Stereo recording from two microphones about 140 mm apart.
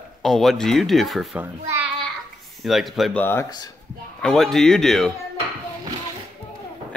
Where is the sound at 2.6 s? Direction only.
Centre (ahead or behind).